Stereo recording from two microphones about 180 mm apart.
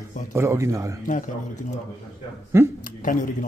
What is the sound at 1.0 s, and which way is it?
Speech, 45° left (ahead or behind).